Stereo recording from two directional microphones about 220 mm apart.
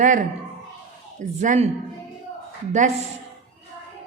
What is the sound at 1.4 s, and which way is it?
Speech, 35° right (ahead or behind).